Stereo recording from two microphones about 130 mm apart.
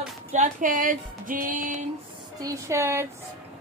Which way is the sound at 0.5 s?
90° right.